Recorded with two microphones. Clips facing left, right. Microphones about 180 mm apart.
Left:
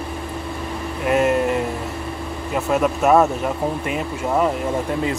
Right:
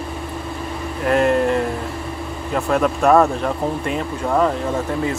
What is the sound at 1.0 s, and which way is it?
Speech, 5° left (ahead or behind).